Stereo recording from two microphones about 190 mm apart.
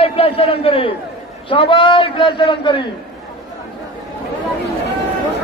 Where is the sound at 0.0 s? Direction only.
30° left (ahead or behind).